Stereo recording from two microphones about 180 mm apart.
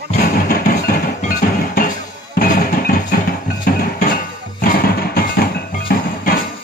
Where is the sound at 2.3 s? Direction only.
55° left (ahead or behind).